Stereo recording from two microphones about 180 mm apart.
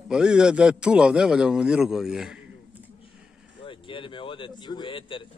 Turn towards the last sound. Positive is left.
turn(degrees=30)  # may be behind; listen again after turning